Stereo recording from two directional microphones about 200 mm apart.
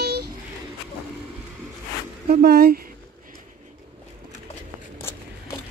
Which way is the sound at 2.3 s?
50° right (ahead or behind).